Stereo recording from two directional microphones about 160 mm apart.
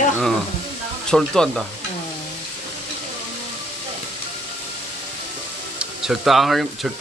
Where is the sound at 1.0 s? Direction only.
5° left (ahead or behind).